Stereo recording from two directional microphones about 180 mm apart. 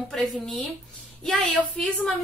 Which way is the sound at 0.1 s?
Centre (ahead or behind).